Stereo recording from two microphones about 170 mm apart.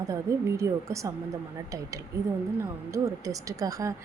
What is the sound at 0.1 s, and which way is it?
A woman's voice, 15° right (ahead or behind).